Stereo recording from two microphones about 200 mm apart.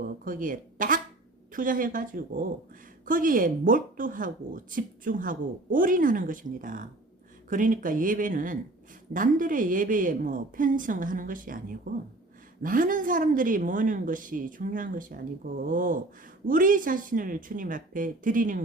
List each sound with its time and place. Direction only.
0.3 s speech: 40° right (ahead or behind)